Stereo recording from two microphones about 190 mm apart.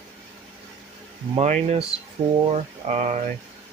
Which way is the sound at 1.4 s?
35° right (ahead or behind).